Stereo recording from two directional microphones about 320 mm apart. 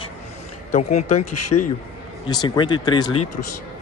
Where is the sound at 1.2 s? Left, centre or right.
Left.